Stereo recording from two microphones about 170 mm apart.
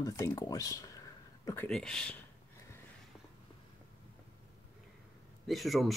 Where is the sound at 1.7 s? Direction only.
5° left (ahead or behind).